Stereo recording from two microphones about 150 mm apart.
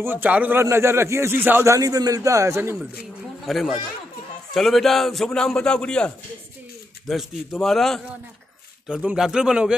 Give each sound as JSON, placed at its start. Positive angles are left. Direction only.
{"t": 0.0, "sound": "speech", "side_deg": -15}
{"t": 3.4, "sound": "speech", "side_deg": 0}